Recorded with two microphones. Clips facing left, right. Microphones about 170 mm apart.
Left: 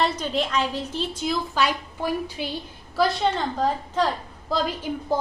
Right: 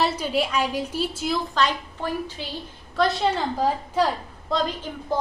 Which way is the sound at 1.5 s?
10° left (ahead or behind).